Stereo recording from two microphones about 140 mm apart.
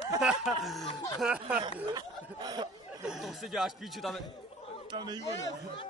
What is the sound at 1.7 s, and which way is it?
Speech, 30° right (ahead or behind).